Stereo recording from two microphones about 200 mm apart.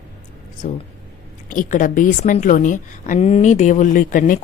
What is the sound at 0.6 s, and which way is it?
A woman's voice, 40° left (ahead or behind).